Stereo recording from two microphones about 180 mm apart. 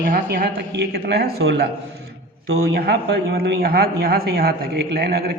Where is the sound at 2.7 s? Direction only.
70° right (ahead or behind).